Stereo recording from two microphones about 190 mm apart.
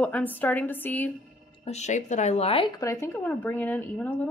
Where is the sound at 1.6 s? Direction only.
35° left (ahead or behind).